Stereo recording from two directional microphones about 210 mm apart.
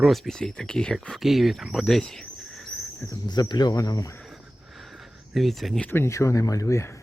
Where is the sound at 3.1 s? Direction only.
20° left (ahead or behind).